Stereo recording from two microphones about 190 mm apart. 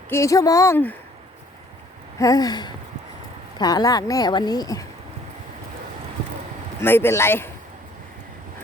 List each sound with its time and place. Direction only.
0.1 s speech: 15° left (ahead or behind)
2.1 s a woman's voice: 20° left (ahead or behind)
6.8 s speech: 10° left (ahead or behind)